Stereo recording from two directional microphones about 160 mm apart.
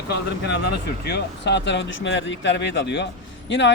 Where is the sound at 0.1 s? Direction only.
90° left.